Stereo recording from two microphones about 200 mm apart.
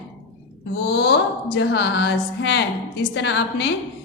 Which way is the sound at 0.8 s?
55° left (ahead or behind).